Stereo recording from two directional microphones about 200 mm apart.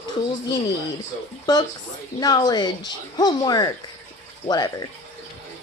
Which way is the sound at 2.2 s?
20° left (ahead or behind).